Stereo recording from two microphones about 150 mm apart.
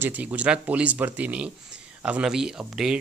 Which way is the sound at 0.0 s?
10° right (ahead or behind).